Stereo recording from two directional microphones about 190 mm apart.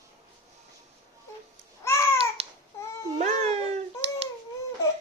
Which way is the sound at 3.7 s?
30° right (ahead or behind).